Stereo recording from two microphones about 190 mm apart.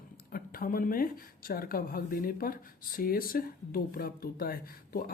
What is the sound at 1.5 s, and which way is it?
Speech, 50° left (ahead or behind).